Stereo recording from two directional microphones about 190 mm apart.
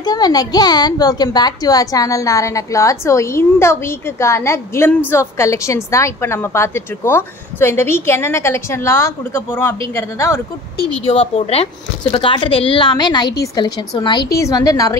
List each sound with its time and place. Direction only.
0.0 s a woman's voice: 20° left (ahead or behind)
11.1 s speech: 30° left (ahead or behind)